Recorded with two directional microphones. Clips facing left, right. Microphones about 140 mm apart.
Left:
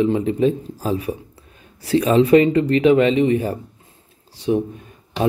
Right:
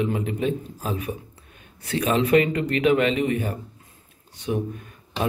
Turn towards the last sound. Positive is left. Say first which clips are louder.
# left 7 dB
turn(degrees=30)  # may be behind; listen again after turning